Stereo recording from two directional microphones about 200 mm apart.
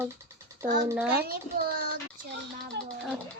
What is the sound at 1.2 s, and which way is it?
Speech, 50° right (ahead or behind).